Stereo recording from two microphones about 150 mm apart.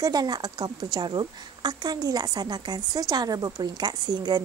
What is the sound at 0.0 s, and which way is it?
A woman's voice, 25° right (ahead or behind).